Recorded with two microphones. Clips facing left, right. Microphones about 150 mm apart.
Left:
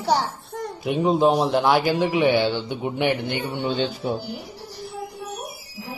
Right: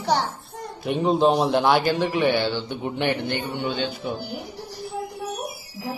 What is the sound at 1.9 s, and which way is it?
A man's voice, 15° left (ahead or behind).